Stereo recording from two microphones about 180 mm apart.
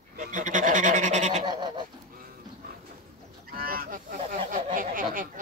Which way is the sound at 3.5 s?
55° right (ahead or behind).